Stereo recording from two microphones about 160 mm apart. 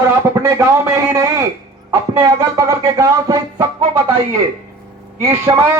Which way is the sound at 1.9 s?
20° right (ahead or behind).